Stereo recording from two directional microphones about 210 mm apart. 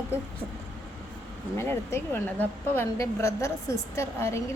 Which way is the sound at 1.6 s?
10° left (ahead or behind).